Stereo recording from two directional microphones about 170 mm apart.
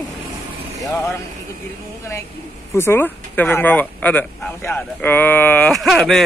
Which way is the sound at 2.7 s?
15° left (ahead or behind).